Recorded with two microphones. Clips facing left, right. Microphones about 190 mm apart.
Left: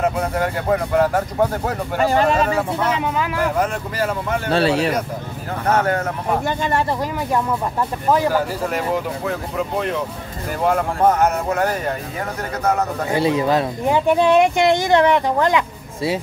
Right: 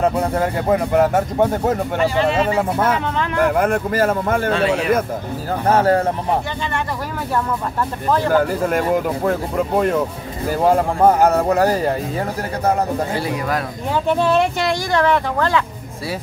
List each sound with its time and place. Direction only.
0.4 s speech: 20° right (ahead or behind)
2.0 s speech: 45° left (ahead or behind)
3.3 s a man's voice: 55° right (ahead or behind)
4.5 s speech: 35° left (ahead or behind)
5.7 s speech: 30° right (ahead or behind)
8.7 s a man's voice: 50° right (ahead or behind)
10.6 s speech: 30° right (ahead or behind)
13.1 s speech: 25° left (ahead or behind)
13.8 s speech: 10° left (ahead or behind)